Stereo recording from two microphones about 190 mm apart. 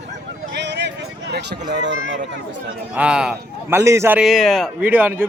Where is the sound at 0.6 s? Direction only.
65° right (ahead or behind).